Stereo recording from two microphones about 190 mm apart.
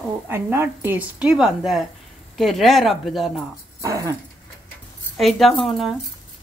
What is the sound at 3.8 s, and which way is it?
Speech, 15° right (ahead or behind).